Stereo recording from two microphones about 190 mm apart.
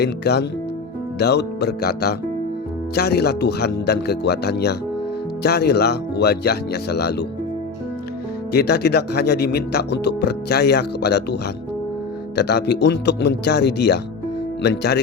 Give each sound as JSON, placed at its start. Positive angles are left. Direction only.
{"t": 0.0, "sound": "speech", "side_deg": 60}
{"t": 8.5, "sound": "speech", "side_deg": 60}
{"t": 12.4, "sound": "speech", "side_deg": 60}